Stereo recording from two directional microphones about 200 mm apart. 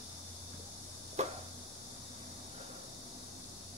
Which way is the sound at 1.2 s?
35° right (ahead or behind).